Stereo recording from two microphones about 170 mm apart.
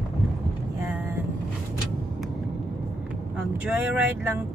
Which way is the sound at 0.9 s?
10° right (ahead or behind).